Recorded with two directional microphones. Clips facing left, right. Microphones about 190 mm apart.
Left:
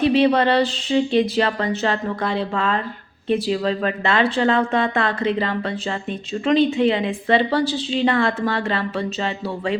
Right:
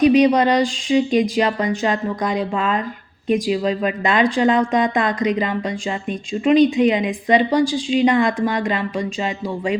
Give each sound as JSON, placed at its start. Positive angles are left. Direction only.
{"t": 0.0, "sound": "a woman's voice", "side_deg": -15}